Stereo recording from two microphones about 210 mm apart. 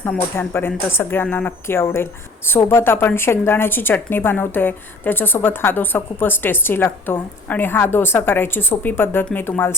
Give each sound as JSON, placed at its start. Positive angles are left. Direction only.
{"t": 0.0, "sound": "a woman's voice", "side_deg": 10}